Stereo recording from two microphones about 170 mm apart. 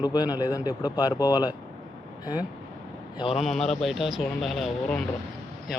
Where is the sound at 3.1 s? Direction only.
30° left (ahead or behind).